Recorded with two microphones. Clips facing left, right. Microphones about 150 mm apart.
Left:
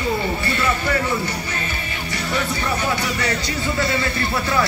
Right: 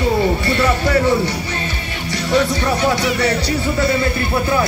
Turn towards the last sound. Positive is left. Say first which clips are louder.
# right 5 dB
turn(degrees=-30)  # may be behind; listen again after turning